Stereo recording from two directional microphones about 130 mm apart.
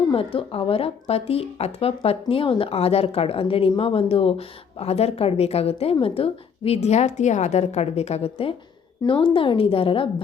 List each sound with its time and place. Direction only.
0.1 s speech: 45° left (ahead or behind)